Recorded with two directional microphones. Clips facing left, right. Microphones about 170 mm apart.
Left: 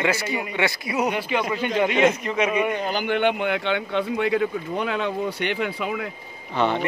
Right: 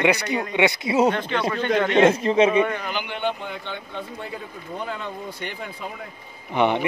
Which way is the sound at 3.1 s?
70° left (ahead or behind).